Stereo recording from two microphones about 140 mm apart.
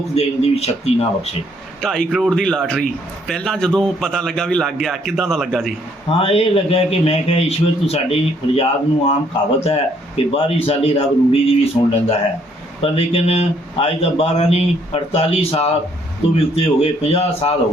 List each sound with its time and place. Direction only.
0.1 s a man's voice: 45° left (ahead or behind)
2.1 s a man's voice: centre (ahead or behind)
6.1 s a man's voice: 40° left (ahead or behind)
10.2 s a man's voice: 45° left (ahead or behind)